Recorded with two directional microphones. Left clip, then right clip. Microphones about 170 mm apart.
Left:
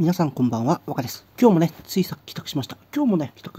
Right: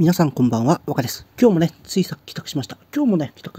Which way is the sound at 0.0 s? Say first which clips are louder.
Right 4 dB; 30° right (ahead or behind).